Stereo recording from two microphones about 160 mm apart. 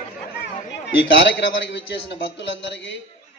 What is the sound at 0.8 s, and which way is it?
A man's voice, 90° left.